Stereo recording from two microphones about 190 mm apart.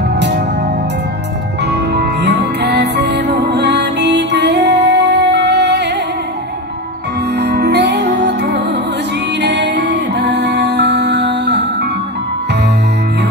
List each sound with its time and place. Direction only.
1.6 s music: 60° right (ahead or behind)
7.3 s music: 60° right (ahead or behind)